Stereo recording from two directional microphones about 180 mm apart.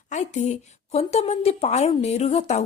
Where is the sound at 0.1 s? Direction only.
40° left (ahead or behind).